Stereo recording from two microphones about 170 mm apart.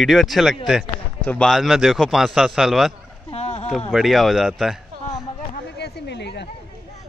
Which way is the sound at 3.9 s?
Centre (ahead or behind).